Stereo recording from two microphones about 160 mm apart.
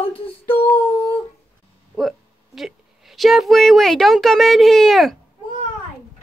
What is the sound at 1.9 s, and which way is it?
Speech, centre (ahead or behind).